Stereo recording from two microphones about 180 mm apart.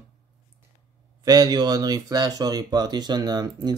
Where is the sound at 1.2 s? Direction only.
20° right (ahead or behind).